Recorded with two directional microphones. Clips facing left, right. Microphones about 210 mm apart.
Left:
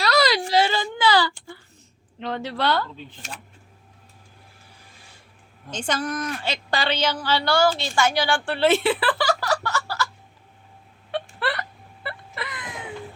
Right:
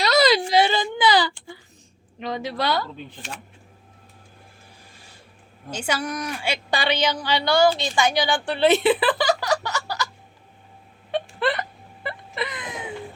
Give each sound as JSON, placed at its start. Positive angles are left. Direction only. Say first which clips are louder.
{"t": 0.0, "sound": "a sound", "louder": "right 3 dB", "side_deg": -20}
{"t": 2.1, "sound": "a woman's voice", "louder": "right 1 dB", "side_deg": -10}
{"t": 5.7, "sound": "a woman's voice", "louder": "even", "side_deg": -10}
{"t": 11.1, "sound": "hiccup", "louder": "right 4 dB", "side_deg": -20}
{"t": 12.0, "sound": "wail", "louder": "right 4 dB", "side_deg": -20}